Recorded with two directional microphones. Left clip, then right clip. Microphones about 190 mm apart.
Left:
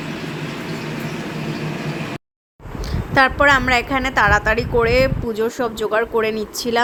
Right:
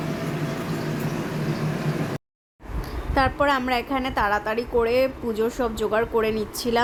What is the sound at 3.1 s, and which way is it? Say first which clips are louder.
A woman's voice: left 7 dB; 15° left (ahead or behind).